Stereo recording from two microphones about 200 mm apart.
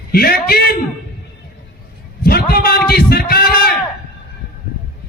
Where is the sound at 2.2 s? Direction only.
50° left (ahead or behind).